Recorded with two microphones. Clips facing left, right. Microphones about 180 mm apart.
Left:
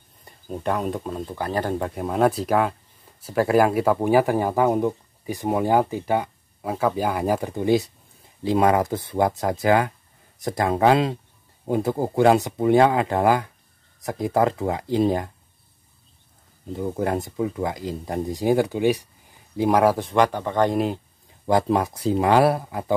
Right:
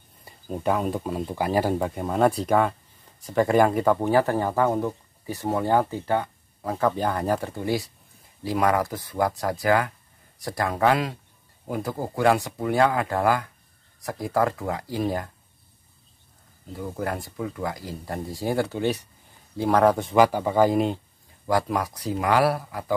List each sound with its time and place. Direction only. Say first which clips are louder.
0.2 s speech: right 1 dB; centre (ahead or behind); by 15.3 s 20° left (ahead or behind)
16.7 s speech: left 5 dB; 20° left (ahead or behind); by 21.0 s centre (ahead or behind)
21.5 s speech: left 4 dB; 25° left (ahead or behind)